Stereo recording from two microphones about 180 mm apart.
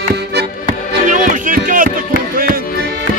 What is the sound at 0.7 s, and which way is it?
Music, 45° right (ahead or behind).